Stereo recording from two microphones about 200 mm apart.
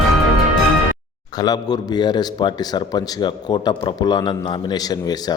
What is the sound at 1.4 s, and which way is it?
A man's voice, 20° left (ahead or behind).